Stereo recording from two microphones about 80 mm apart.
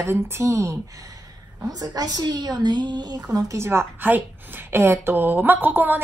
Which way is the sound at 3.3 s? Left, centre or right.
Right.